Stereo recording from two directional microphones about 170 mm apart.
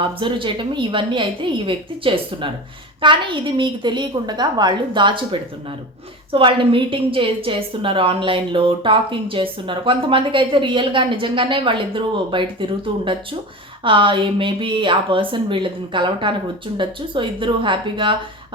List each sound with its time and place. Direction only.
0.0 s a woman's voice: 30° right (ahead or behind)